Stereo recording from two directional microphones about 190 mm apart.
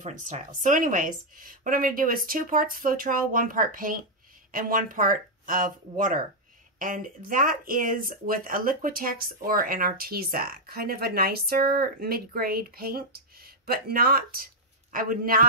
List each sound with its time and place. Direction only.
0.0 s speech: 40° right (ahead or behind)